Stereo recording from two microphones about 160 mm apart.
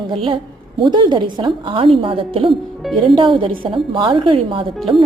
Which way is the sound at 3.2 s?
30° right (ahead or behind).